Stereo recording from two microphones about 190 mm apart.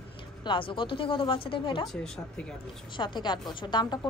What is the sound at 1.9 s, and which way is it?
Speech, centre (ahead or behind).